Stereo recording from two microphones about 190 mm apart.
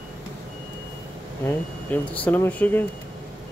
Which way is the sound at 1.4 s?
10° left (ahead or behind).